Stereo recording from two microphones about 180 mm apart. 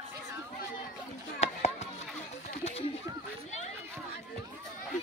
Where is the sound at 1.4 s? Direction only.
35° left (ahead or behind).